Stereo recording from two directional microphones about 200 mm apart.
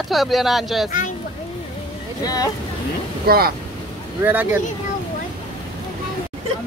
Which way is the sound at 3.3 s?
50° right (ahead or behind).